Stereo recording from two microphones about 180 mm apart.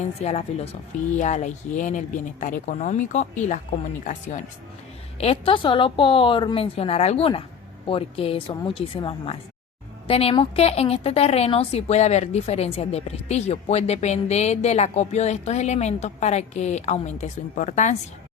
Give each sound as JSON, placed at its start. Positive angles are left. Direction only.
{"t": 0.0, "sound": "a woman's voice", "side_deg": 35}
{"t": 5.1, "sound": "a woman's voice", "side_deg": 35}